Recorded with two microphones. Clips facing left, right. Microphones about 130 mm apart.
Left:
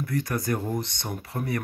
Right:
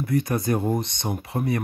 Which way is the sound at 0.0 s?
20° right (ahead or behind).